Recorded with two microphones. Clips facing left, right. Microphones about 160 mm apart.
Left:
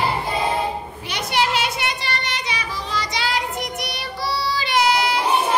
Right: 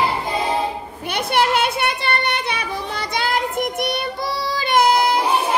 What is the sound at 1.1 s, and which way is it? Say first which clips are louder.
Child singing: right 3 dB; 55° right (ahead or behind).